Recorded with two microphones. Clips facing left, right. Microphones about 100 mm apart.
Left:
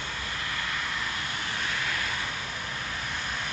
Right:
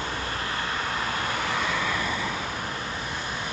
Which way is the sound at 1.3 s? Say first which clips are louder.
Right 7 dB; 90° right.